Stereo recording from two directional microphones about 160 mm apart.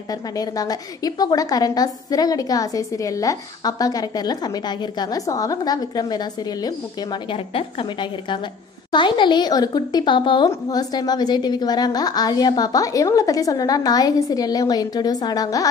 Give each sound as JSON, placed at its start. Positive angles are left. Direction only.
{"t": 0.1, "sound": "a woman's voice", "side_deg": 25}